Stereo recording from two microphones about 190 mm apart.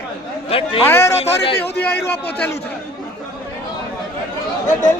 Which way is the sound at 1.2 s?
35° left (ahead or behind).